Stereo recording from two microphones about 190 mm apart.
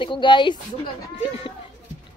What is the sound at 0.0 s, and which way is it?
A woman's voice, 25° left (ahead or behind).